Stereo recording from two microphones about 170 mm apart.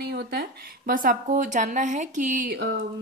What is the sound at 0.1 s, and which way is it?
A woman's voice, 80° right.